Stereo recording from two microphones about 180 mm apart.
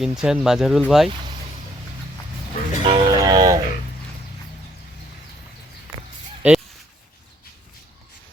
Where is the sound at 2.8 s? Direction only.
25° right (ahead or behind).